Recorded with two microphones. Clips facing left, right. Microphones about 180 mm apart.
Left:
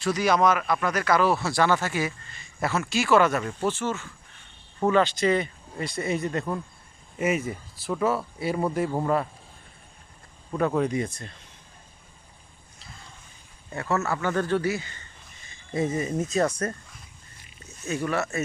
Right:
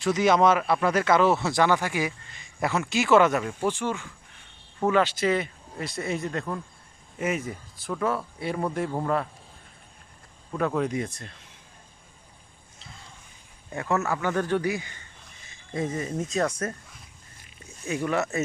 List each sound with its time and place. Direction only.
0.0 s a man's voice: 20° right (ahead or behind); by 9.2 s 5° left (ahead or behind)
10.6 s speech: centre (ahead or behind)
13.7 s a man's voice: 15° right (ahead or behind)
15.4 s speech: 5° left (ahead or behind)
17.6 s speech: 15° right (ahead or behind)